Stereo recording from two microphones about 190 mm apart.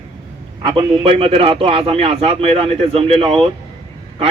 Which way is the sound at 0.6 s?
30° right (ahead or behind).